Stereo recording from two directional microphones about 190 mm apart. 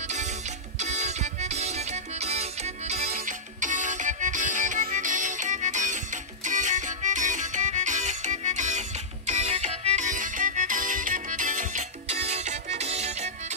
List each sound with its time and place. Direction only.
0.7 s music: 35° right (ahead or behind)